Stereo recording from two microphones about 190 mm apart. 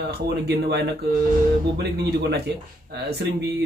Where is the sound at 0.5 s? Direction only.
60° right (ahead or behind).